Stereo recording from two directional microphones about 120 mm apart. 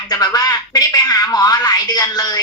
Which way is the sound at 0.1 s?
35° left (ahead or behind).